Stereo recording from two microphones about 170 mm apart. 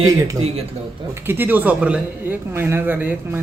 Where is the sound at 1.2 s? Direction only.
10° right (ahead or behind).